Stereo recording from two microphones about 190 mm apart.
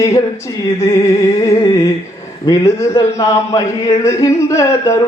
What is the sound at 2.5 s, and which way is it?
A man's voice, 15° left (ahead or behind).